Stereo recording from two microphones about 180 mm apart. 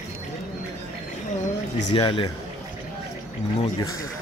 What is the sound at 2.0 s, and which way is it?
Speech, 25° left (ahead or behind).